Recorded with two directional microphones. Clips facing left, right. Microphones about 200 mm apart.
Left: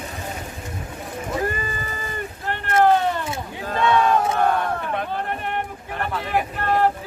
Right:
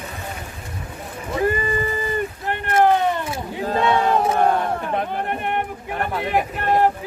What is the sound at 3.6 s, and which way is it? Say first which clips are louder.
Battle cry: right 1 dB; 25° right (ahead or behind).